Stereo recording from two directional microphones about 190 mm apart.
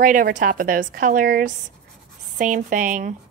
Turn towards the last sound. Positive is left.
turn(degrees=-45)  # may be behind; listen again after turning